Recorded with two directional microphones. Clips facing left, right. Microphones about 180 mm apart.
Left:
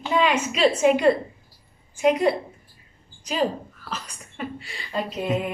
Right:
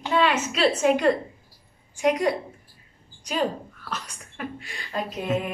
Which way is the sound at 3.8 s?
Centre (ahead or behind).